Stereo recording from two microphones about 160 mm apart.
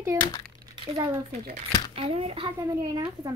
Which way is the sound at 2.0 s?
35° right (ahead or behind).